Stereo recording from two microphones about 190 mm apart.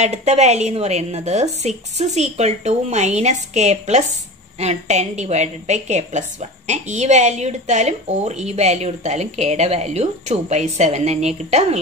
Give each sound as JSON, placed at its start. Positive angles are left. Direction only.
{"t": 0.0, "sound": "a woman's voice", "side_deg": -35}